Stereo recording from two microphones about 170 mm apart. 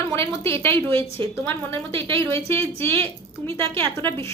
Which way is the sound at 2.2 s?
15° left (ahead or behind).